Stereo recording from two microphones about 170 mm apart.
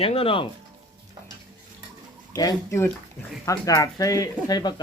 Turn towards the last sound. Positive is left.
turn(degrees=25)  # may be behind; listen again after turning